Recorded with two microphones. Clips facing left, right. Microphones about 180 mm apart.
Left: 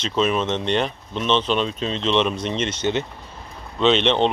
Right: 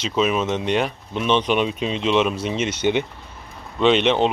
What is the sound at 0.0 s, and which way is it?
Speech, 5° right (ahead or behind).